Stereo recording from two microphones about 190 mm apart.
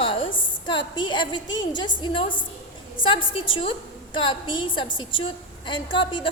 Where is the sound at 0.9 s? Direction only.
25° left (ahead or behind).